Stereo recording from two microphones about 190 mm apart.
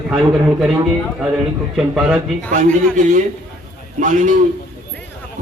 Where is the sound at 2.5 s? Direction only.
40° right (ahead or behind).